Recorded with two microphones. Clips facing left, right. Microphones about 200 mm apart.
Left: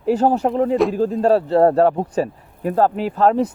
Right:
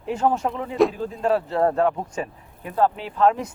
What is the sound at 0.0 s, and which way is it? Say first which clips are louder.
Speech: left 6 dB; 35° left (ahead or behind).